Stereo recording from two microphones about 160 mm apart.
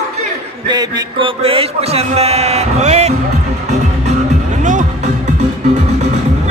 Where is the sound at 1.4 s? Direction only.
40° right (ahead or behind).